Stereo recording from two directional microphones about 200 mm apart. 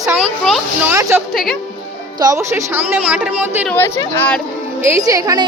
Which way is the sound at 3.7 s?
10° left (ahead or behind).